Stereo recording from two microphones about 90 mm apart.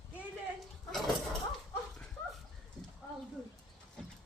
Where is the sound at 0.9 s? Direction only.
Centre (ahead or behind).